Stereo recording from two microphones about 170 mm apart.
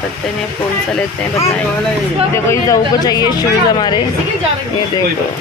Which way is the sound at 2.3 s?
20° left (ahead or behind).